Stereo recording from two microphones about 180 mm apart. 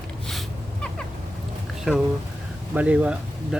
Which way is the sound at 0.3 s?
Centre (ahead or behind).